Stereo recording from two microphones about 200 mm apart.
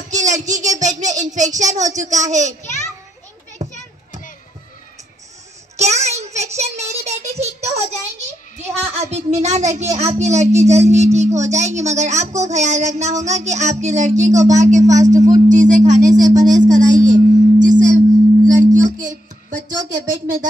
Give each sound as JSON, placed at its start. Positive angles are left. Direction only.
{"t": 0.1, "sound": "speech", "side_deg": -35}
{"t": 3.5, "sound": "children playing", "side_deg": -35}
{"t": 5.8, "sound": "a sound", "side_deg": -35}
{"t": 8.7, "sound": "speech", "side_deg": -30}
{"t": 18.7, "sound": "music", "side_deg": -40}